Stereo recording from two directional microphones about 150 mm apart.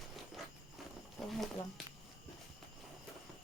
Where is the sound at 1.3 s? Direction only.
Centre (ahead or behind).